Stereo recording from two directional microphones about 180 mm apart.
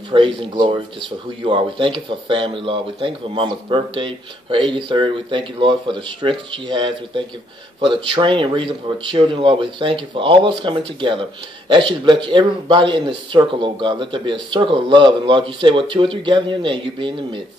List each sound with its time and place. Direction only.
0.1 s speech: 25° right (ahead or behind)